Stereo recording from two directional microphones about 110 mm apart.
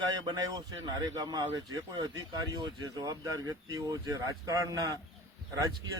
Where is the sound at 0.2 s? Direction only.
35° right (ahead or behind).